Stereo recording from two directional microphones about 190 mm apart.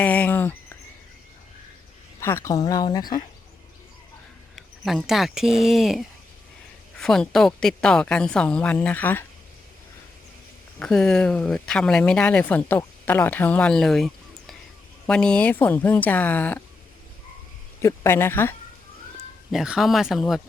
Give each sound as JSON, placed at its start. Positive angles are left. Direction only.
{"t": 0.0, "sound": "a sound", "side_deg": 10}
{"t": 2.2, "sound": "speech", "side_deg": 15}
{"t": 4.5, "sound": "speech", "side_deg": 0}
{"t": 10.8, "sound": "speech", "side_deg": 5}
{"t": 17.8, "sound": "speech", "side_deg": 15}
{"t": 19.5, "sound": "speech", "side_deg": -5}